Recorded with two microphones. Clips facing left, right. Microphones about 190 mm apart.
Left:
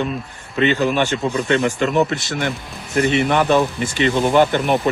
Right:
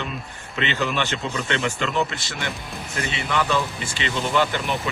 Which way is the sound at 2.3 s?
55° left (ahead or behind).